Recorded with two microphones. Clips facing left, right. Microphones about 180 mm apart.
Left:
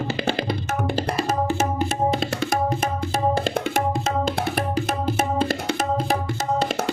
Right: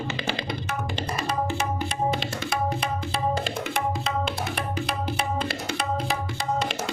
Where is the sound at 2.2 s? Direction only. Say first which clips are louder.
Left 5 dB; 60° left (ahead or behind).